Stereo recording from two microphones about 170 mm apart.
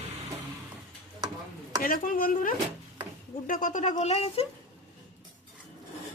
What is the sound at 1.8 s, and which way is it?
Speech, 55° left (ahead or behind).